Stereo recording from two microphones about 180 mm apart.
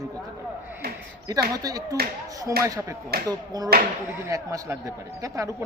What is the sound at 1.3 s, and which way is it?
Speech, 20° right (ahead or behind).